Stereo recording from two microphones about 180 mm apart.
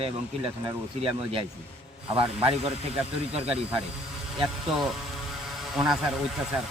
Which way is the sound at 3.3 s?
5° right (ahead or behind).